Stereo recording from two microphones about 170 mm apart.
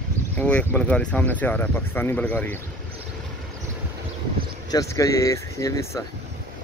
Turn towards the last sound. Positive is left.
turn(degrees=15)  # may be behind; listen again after turning